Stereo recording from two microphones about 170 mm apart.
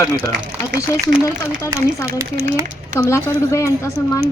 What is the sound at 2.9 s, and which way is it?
A woman's voice, 15° left (ahead or behind).